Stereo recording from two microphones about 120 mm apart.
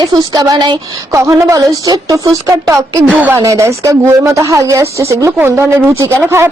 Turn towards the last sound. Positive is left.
turn(degrees=-20)  # may be behind; listen again after turning